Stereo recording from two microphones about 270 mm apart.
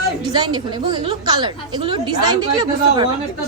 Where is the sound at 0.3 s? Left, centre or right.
Centre.